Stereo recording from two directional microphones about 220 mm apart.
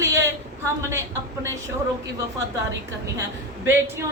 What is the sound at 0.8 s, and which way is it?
Speech, 10° right (ahead or behind).